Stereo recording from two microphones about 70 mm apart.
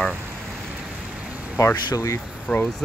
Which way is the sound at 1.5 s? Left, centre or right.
Left.